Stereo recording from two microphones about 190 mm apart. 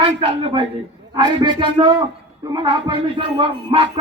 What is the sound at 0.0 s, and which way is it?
Speech, 25° right (ahead or behind).